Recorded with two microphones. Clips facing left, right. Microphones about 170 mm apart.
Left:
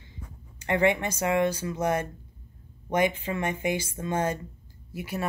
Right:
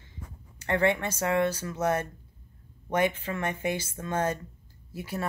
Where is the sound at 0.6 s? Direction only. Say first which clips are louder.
Left 2 dB; 10° left (ahead or behind).